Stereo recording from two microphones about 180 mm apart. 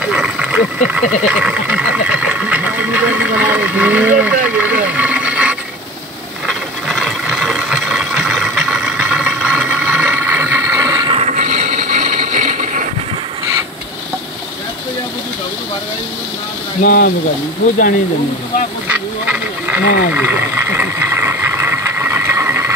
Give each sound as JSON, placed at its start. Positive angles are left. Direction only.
{"t": 0.0, "sound": "speech", "side_deg": -5}
{"t": 6.4, "sound": "ratchet", "side_deg": 0}
{"t": 11.1, "sound": "a sound", "side_deg": -40}
{"t": 16.8, "sound": "speech", "side_deg": 50}
{"t": 18.9, "sound": "duck", "side_deg": -10}
{"t": 20.1, "sound": "vehicle", "side_deg": -10}